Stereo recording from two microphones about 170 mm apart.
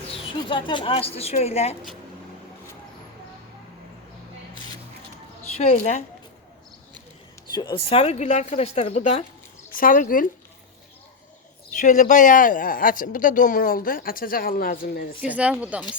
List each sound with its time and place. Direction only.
0.4 s speech: 30° left (ahead or behind)
5.7 s speech: 45° left (ahead or behind)
7.5 s speech: 25° left (ahead or behind); by 10.2 s 50° left (ahead or behind)
11.8 s speech: 45° left (ahead or behind)
15.2 s speech: 10° right (ahead or behind)